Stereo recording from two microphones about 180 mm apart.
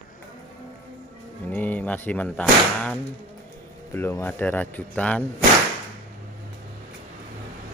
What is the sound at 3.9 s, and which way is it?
Speech, 10° left (ahead or behind).